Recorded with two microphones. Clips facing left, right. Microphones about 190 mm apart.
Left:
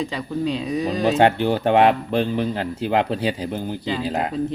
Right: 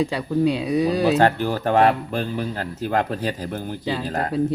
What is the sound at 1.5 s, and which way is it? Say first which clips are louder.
Speech: left 3 dB; 20° left (ahead or behind).